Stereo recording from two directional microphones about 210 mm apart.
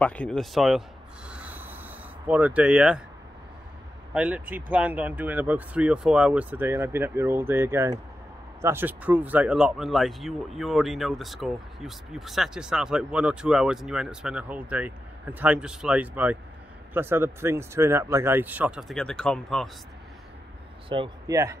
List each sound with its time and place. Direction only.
0.0 s speech: 5° left (ahead or behind)
4.1 s speech: 5° right (ahead or behind)
20.9 s speech: 25° right (ahead or behind)